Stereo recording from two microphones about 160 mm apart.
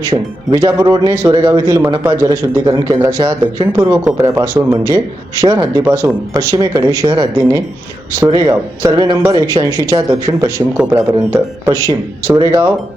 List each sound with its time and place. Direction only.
0.0 s speech: 20° right (ahead or behind)